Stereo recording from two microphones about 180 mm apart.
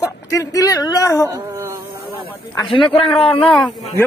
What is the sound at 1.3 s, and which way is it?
Insect, 15° right (ahead or behind).